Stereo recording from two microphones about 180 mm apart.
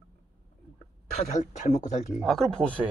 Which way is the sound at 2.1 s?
Centre (ahead or behind).